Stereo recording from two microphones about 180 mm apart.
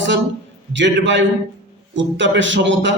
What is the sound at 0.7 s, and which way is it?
A man's voice, 85° right.